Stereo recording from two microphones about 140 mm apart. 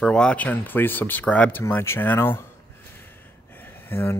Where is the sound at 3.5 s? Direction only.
15° left (ahead or behind).